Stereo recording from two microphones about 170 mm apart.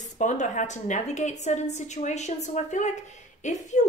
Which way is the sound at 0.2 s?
45° left (ahead or behind).